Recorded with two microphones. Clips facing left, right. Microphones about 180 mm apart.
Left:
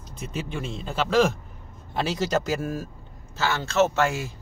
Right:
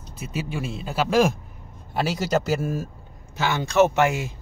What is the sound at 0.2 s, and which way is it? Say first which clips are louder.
Speech: right 2 dB; 5° right (ahead or behind).